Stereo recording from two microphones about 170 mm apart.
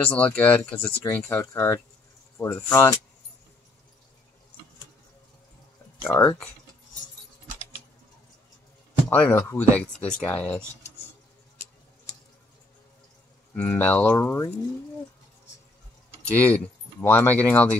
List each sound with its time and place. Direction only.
0.0 s speech: 10° left (ahead or behind)
6.0 s speech: 15° left (ahead or behind)
9.1 s speech: 10° left (ahead or behind)
13.5 s speech: 10° left (ahead or behind)
16.3 s speech: 10° left (ahead or behind)